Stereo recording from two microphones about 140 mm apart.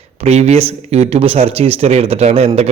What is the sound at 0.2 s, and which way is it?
Speech, 50° right (ahead or behind).